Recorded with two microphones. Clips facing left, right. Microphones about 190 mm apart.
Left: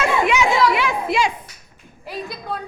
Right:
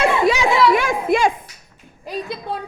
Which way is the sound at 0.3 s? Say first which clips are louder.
Right 3 dB; 40° right (ahead or behind).